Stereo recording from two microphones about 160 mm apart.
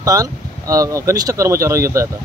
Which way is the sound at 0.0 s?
20° right (ahead or behind).